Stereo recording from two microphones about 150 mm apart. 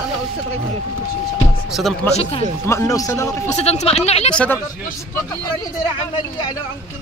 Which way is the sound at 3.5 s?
45° left (ahead or behind).